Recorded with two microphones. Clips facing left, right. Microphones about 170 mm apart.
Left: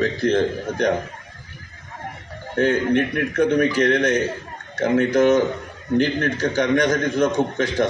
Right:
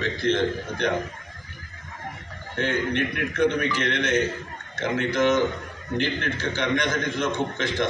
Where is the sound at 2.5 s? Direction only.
40° left (ahead or behind).